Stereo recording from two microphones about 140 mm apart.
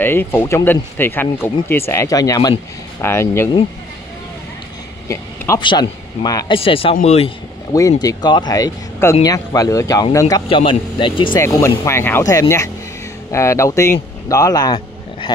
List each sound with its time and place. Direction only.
0.0 s speech: 15° left (ahead or behind)
5.0 s a sound: 20° left (ahead or behind)
5.6 s speech: 30° left (ahead or behind)
6.5 s a man's voice: 40° left (ahead or behind)
8.0 s speech: 30° left (ahead or behind)
10.3 s speech: 40° left (ahead or behind)
11.3 s speech: 20° left (ahead or behind)